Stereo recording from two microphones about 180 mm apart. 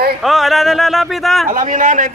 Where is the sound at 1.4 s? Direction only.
50° right (ahead or behind).